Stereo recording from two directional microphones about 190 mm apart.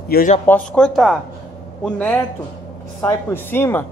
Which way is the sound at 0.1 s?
45° left (ahead or behind).